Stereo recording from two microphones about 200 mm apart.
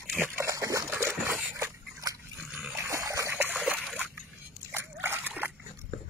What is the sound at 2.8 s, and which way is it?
Splash, 15° right (ahead or behind).